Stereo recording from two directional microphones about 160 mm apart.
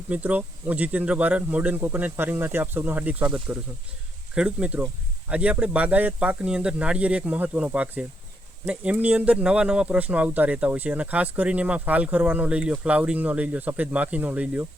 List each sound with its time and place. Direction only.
0.1 s speech: 10° right (ahead or behind)